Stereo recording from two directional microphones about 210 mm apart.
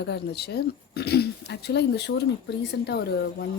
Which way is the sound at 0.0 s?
50° left (ahead or behind).